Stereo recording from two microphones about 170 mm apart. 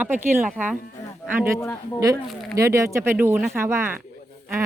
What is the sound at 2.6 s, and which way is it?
Speech, 15° right (ahead or behind).